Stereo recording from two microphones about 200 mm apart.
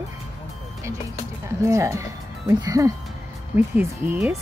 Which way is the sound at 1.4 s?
15° right (ahead or behind).